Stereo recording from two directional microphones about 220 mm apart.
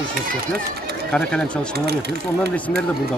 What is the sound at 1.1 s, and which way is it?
Speech, 5° left (ahead or behind).